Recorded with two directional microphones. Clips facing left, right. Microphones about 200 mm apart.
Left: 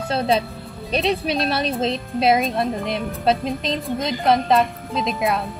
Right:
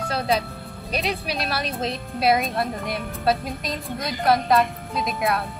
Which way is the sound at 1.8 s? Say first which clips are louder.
Left 5 dB; 25° left (ahead or behind).